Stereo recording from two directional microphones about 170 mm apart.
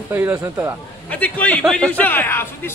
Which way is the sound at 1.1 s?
10° left (ahead or behind).